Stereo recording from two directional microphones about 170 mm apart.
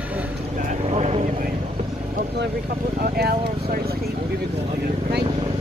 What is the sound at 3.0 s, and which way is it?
Vehicle, 60° right (ahead or behind).